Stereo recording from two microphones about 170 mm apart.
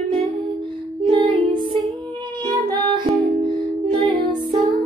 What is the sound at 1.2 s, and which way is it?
Music, 30° right (ahead or behind).